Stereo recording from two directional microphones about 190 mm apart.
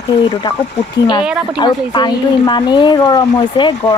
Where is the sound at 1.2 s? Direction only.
5° right (ahead or behind).